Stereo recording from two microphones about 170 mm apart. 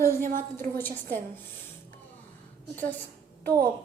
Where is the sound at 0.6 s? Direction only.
10° left (ahead or behind).